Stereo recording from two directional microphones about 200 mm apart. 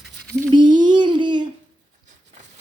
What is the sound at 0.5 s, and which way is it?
Speech, 20° right (ahead or behind).